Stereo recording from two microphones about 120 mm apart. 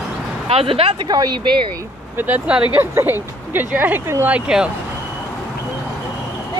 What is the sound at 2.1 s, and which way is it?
Speech, 15° right (ahead or behind).